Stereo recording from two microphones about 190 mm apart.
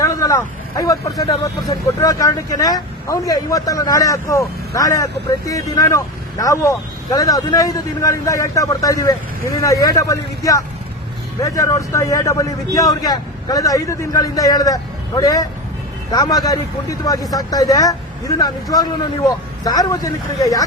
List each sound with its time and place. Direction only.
0.0 s a man's voice: 15° left (ahead or behind)